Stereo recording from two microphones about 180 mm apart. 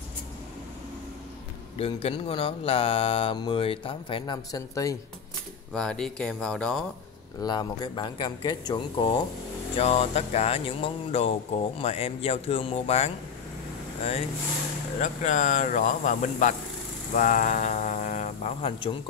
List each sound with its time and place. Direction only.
1.8 s speech: 30° left (ahead or behind)
5.8 s speech: 5° left (ahead or behind)
7.4 s speech: 25° left (ahead or behind)
9.8 s speech: 35° left (ahead or behind)
15.0 s speech: 40° left (ahead or behind)